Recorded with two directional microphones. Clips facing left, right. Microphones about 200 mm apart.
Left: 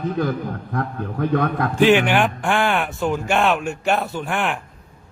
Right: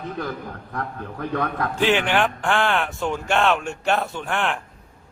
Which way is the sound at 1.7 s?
15° left (ahead or behind).